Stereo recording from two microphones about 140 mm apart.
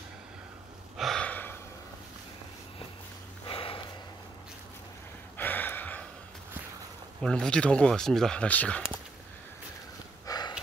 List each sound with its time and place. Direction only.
0.9 s gasp: centre (ahead or behind)
3.4 s snort: 40° left (ahead or behind)
5.4 s a sound: 15° left (ahead or behind)
7.2 s speech: 5° left (ahead or behind)
10.2 s sniff: 30° left (ahead or behind)